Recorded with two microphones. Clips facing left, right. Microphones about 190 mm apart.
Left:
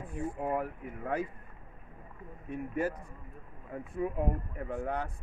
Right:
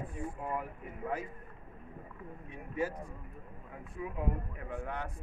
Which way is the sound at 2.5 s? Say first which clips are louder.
Left 4 dB; 55° left (ahead or behind).